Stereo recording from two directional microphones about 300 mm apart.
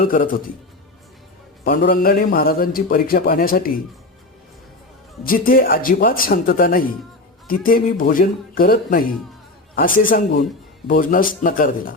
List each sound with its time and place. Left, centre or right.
0.0 s a man's voice: left
1.6 s a man's voice: left
5.2 s a man's voice: left